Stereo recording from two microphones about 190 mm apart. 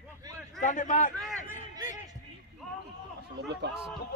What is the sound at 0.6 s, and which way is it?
Speech, 40° left (ahead or behind).